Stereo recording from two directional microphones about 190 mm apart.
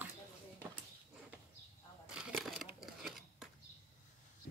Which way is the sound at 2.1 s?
Centre (ahead or behind).